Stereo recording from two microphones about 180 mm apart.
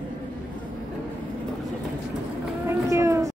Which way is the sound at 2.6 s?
15° right (ahead or behind).